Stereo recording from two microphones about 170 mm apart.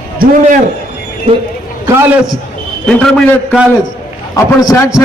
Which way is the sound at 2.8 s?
10° left (ahead or behind).